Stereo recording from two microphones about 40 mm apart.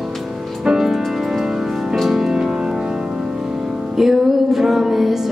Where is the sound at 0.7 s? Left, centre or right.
Centre.